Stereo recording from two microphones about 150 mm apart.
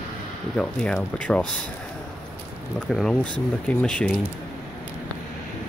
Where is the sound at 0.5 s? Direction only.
5° left (ahead or behind).